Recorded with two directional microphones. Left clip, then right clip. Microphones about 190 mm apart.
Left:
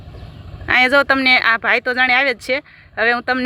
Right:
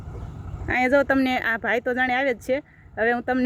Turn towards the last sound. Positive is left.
turn(degrees=-25)  # may be behind; listen again after turning